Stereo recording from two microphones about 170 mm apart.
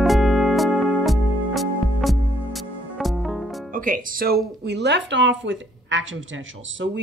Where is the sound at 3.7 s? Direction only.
55° right (ahead or behind).